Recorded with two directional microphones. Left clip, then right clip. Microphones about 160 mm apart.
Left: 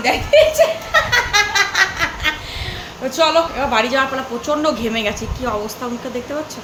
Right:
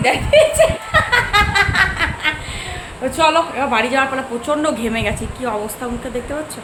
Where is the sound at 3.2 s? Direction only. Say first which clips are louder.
Even; 20° right (ahead or behind).